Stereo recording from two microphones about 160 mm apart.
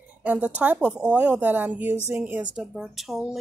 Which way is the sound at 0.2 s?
10° right (ahead or behind).